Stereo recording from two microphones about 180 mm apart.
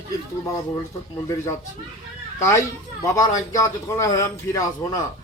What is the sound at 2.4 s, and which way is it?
A man's voice, 15° left (ahead or behind).